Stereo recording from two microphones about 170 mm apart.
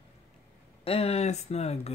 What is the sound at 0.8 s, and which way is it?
Speech, 35° left (ahead or behind).